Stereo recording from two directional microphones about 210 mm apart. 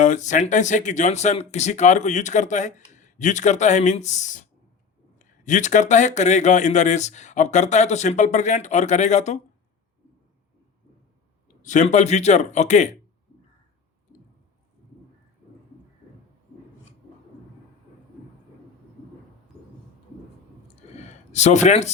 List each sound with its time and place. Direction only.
0.0 s speech: 35° left (ahead or behind)
11.6 s speech: 35° left (ahead or behind)
20.8 s a sound: 30° left (ahead or behind)